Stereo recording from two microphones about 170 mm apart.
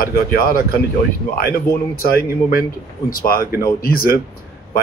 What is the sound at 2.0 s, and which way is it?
Speech, 60° left (ahead or behind).